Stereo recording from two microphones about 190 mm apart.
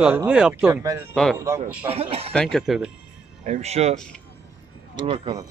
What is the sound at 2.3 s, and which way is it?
Speech, 5° left (ahead or behind).